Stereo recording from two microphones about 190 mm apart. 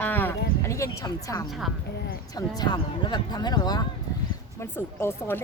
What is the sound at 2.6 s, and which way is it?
Speech, 25° left (ahead or behind).